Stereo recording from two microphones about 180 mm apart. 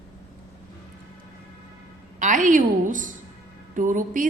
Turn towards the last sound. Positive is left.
turn(degrees=-45)  # may be behind; listen again after turning